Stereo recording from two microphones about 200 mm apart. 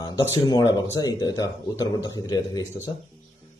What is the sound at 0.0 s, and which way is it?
A man's voice, 20° left (ahead or behind).